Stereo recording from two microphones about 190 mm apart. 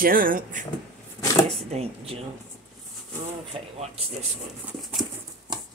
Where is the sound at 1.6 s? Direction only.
30° right (ahead or behind).